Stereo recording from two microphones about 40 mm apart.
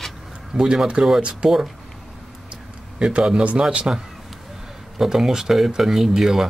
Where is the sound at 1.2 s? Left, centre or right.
Right.